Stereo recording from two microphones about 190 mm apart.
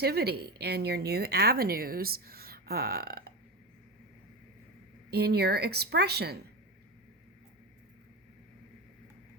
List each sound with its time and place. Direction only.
0.0 s speech: 60° right (ahead or behind)
5.1 s speech: 60° right (ahead or behind)